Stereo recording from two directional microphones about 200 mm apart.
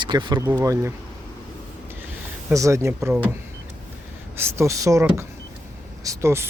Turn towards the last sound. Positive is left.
turn(degrees=-15)  # may be behind; listen again after turning